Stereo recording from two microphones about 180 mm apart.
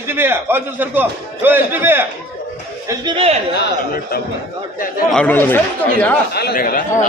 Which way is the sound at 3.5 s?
55° left (ahead or behind).